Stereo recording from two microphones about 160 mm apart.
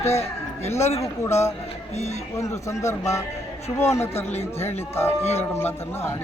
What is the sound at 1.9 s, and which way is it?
Speech, 45° left (ahead or behind).